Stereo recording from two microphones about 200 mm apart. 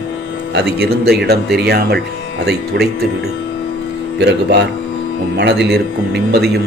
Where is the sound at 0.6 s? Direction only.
55° right (ahead or behind).